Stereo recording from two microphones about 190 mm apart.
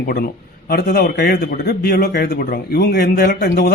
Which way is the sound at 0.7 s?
55° left (ahead or behind).